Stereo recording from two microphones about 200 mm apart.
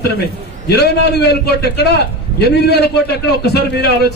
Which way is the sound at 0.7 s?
55° left (ahead or behind).